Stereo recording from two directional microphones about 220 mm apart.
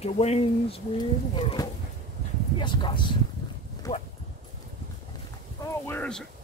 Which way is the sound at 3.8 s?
20° left (ahead or behind).